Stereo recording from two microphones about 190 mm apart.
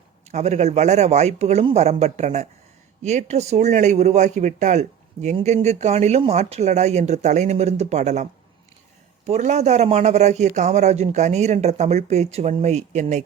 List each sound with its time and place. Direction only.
0.3 s a man's voice: 35° right (ahead or behind)